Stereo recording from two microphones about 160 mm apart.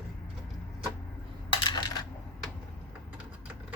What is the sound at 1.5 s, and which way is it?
Coin, 30° left (ahead or behind).